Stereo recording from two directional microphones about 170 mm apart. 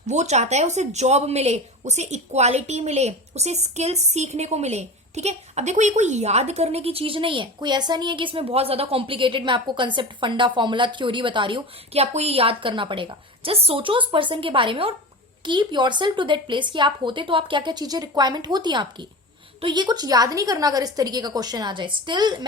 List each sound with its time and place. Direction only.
0.1 s a woman's voice: 40° right (ahead or behind); by 22.4 s 25° right (ahead or behind)